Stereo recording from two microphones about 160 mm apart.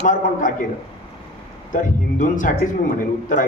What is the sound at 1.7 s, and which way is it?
Speech, 55° left (ahead or behind).